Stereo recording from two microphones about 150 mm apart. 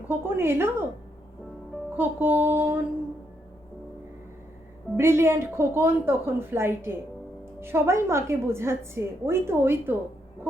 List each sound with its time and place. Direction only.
0.1 s a woman's voice: 15° right (ahead or behind)
2.0 s a woman's voice: 15° right (ahead or behind)
4.9 s a woman's voice: 15° right (ahead or behind)